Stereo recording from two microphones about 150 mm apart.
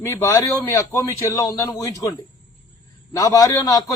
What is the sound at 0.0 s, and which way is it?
A man's voice, 20° left (ahead or behind).